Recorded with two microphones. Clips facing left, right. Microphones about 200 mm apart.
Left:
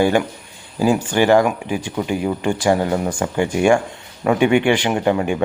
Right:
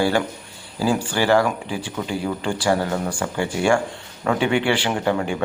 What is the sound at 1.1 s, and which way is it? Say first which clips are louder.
Speech: left 4 dB; 20° left (ahead or behind).